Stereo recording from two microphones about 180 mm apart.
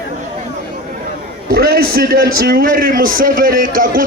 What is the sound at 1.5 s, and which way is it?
A man's voice, 60° right (ahead or behind).